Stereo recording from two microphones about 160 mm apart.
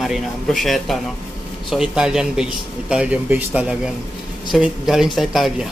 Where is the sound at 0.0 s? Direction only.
Centre (ahead or behind).